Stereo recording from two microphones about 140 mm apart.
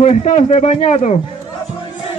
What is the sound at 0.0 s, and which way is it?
Speech, 55° left (ahead or behind).